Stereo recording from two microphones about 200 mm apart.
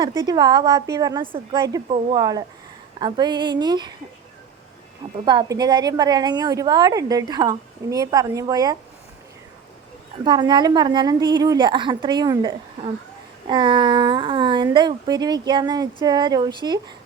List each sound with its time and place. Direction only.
0.0 s a woman's voice: 20° right (ahead or behind)
5.2 s a woman's voice: 20° right (ahead or behind)
10.2 s a woman's voice: 20° right (ahead or behind)